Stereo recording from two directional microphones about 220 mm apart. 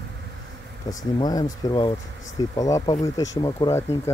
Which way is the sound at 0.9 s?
15° left (ahead or behind).